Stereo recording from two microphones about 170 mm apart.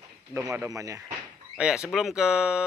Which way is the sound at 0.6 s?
20° right (ahead or behind).